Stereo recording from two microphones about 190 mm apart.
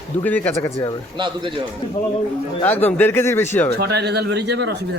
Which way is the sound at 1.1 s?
25° right (ahead or behind).